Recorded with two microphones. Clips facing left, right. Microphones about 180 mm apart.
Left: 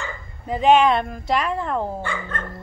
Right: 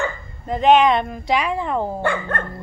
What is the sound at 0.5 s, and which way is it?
Speech, 5° left (ahead or behind).